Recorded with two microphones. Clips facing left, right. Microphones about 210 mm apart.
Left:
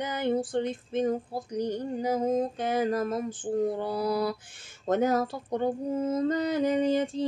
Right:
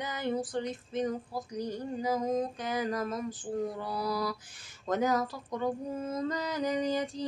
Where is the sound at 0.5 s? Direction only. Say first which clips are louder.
Left 5 dB; 25° left (ahead or behind).